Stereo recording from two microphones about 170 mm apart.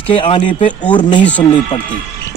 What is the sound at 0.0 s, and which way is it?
A man's voice, 30° left (ahead or behind).